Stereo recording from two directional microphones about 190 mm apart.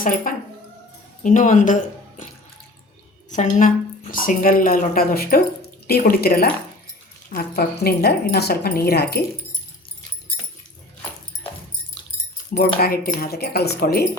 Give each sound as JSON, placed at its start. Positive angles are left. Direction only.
{"t": 0.0, "sound": "speech", "side_deg": 45}
{"t": 3.2, "sound": "speech", "side_deg": 40}
{"t": 12.5, "sound": "speech", "side_deg": 50}